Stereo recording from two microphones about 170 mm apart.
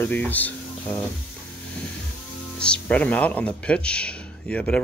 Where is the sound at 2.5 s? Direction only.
5° left (ahead or behind).